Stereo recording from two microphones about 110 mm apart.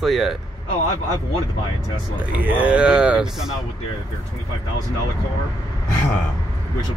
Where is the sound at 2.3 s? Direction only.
15° right (ahead or behind).